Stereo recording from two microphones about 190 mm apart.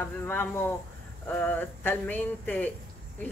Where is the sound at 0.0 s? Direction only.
10° left (ahead or behind).